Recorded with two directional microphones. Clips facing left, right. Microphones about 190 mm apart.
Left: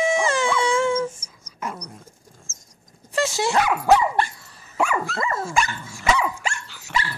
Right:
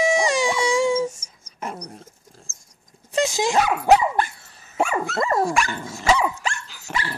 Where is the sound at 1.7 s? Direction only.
45° right (ahead or behind).